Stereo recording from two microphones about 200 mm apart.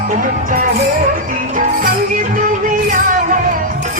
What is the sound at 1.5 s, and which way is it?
Music, 45° right (ahead or behind).